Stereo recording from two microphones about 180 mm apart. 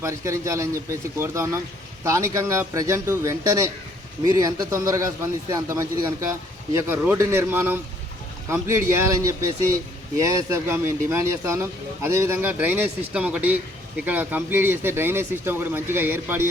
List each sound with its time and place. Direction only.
0.0 s a man's voice: 15° right (ahead or behind)